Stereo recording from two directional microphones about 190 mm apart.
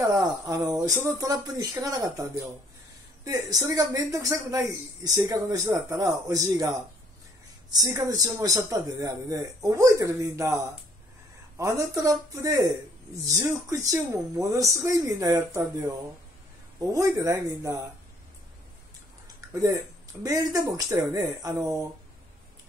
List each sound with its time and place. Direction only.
0.0 s speech: 15° right (ahead or behind)
7.7 s speech: 20° right (ahead or behind)
11.5 s speech: 15° right (ahead or behind)
16.8 s speech: 15° right (ahead or behind)
19.5 s speech: 15° right (ahead or behind)